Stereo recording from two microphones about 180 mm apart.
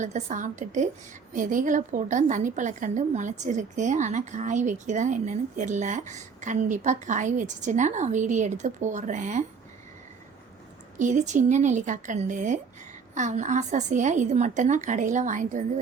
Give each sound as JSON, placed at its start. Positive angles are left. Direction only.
{"t": 0.0, "sound": "a woman's voice", "side_deg": -45}
{"t": 10.9, "sound": "a woman's voice", "side_deg": -45}